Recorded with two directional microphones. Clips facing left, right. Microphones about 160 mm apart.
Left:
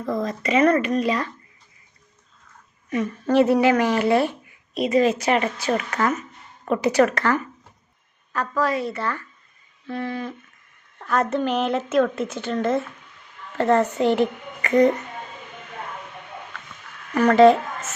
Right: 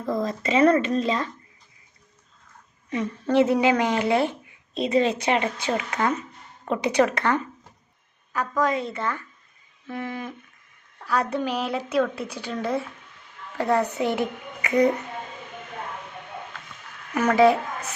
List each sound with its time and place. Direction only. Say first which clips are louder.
0.0 s speech: left 1 dB; centre (ahead or behind)
0.3 s a woman's voice: even; 30° right (ahead or behind)
2.9 s a woman's voice: left 2 dB; 20° right (ahead or behind)
11.3 s a woman's voice: left 4 dB; 5° right (ahead or behind)
17.2 s a woman's voice: left 4 dB; 10° right (ahead or behind)